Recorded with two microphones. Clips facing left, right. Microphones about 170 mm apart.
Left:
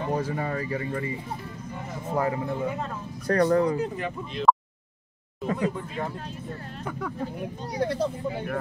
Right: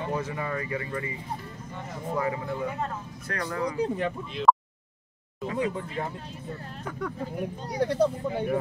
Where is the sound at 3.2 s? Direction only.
35° left (ahead or behind).